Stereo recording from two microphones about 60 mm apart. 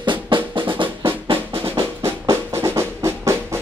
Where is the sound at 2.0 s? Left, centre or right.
Right.